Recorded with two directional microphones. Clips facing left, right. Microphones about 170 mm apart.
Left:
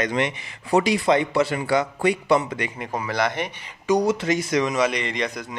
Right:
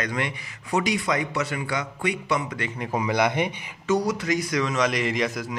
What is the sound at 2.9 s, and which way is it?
Speech, 15° right (ahead or behind).